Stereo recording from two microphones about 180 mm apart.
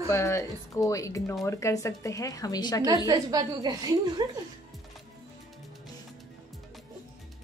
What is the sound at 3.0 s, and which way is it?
A woman's voice, 20° right (ahead or behind).